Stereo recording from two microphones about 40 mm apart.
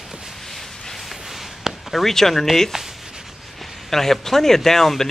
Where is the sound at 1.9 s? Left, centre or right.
Centre.